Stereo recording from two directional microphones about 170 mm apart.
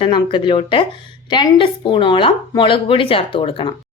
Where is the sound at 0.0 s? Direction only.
30° left (ahead or behind).